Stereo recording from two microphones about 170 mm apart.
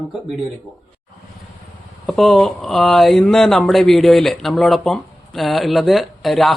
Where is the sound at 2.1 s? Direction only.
Centre (ahead or behind).